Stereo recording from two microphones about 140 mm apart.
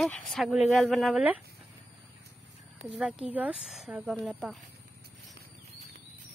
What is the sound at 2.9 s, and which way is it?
Speech, 5° right (ahead or behind).